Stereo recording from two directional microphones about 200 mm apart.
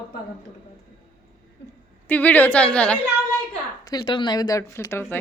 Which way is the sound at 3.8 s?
20° left (ahead or behind).